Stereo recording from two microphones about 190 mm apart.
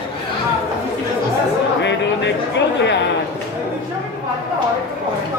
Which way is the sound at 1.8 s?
70° left (ahead or behind).